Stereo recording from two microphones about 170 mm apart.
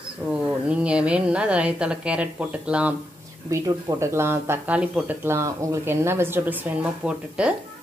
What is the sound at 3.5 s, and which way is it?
A woman's voice, 20° right (ahead or behind).